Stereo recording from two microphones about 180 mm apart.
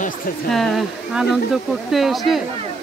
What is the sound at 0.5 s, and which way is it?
Speech, centre (ahead or behind).